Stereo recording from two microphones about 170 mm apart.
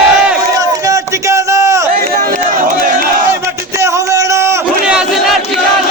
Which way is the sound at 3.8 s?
15° right (ahead or behind).